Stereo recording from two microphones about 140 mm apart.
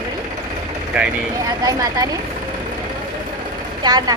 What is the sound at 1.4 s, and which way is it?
Speech, 25° right (ahead or behind).